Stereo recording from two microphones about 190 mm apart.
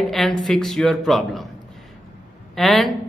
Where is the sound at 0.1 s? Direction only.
Centre (ahead or behind).